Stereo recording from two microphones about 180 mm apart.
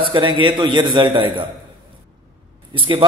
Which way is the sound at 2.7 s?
30° right (ahead or behind).